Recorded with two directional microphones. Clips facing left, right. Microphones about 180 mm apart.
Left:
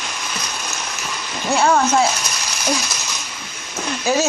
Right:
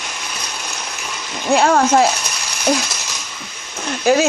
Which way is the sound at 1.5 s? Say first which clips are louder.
Right 3 dB; 60° right (ahead or behind).